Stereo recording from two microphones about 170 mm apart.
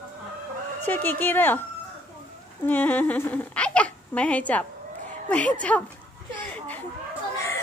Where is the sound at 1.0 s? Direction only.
10° left (ahead or behind).